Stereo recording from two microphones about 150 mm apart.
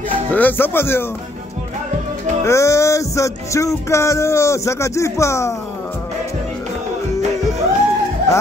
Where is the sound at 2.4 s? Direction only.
20° left (ahead or behind).